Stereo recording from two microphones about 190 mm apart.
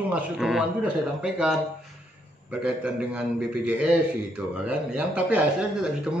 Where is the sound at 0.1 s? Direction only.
Centre (ahead or behind).